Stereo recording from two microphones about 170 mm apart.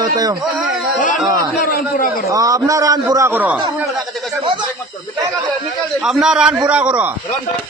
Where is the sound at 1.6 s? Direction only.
60° left (ahead or behind).